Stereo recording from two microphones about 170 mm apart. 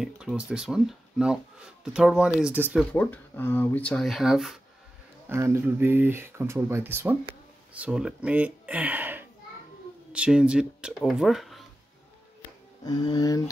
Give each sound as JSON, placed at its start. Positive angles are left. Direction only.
{"t": 0.0, "sound": "speech", "side_deg": -5}
{"t": 2.9, "sound": "speech", "side_deg": 10}
{"t": 5.3, "sound": "speech", "side_deg": -15}
{"t": 12.8, "sound": "speech", "side_deg": 25}